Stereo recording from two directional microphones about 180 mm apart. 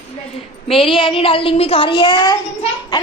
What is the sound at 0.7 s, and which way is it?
A woman's voice, 30° left (ahead or behind).